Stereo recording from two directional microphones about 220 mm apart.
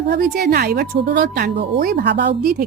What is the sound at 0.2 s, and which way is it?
Speech, 40° right (ahead or behind).